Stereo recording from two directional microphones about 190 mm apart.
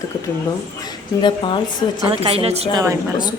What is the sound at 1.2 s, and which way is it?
Speech, 25° left (ahead or behind).